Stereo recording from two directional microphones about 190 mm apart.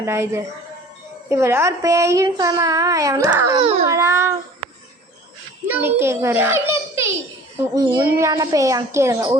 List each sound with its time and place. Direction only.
0.0 s a child's voice: 15° right (ahead or behind)
3.6 s speech: 30° right (ahead or behind)
3.8 s a child's voice: 15° right (ahead or behind)
5.6 s a child's voice: 10° right (ahead or behind)